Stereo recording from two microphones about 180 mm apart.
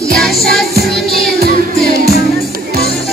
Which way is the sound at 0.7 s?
60° right (ahead or behind).